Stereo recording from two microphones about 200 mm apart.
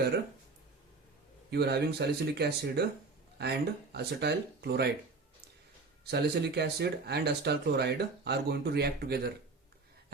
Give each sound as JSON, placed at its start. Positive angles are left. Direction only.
{"t": 1.5, "sound": "speech", "side_deg": -55}
{"t": 6.1, "sound": "speech", "side_deg": -55}